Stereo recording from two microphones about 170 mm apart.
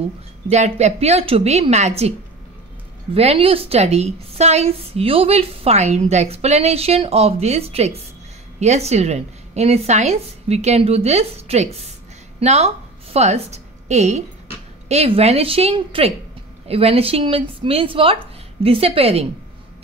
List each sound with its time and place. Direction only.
0.5 s a woman's voice: 40° right (ahead or behind)
3.2 s a woman's voice: 35° right (ahead or behind)